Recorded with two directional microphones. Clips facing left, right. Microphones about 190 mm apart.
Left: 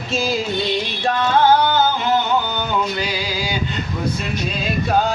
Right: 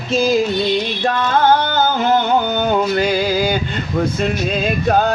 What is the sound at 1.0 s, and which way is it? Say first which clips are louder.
Music: even; 50° right (ahead or behind).